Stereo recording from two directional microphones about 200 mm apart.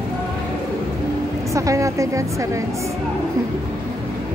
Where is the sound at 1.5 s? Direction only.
15° right (ahead or behind).